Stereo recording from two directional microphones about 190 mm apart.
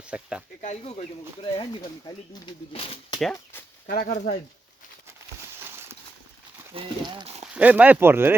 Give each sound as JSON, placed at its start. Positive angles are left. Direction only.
{"t": 0.1, "sound": "speech", "side_deg": -5}
{"t": 0.6, "sound": "speech", "side_deg": 35}
{"t": 3.8, "sound": "speech", "side_deg": 45}
{"t": 5.5, "sound": "a sound", "side_deg": -10}
{"t": 6.7, "sound": "speech", "side_deg": -25}
{"t": 7.4, "sound": "speech", "side_deg": -5}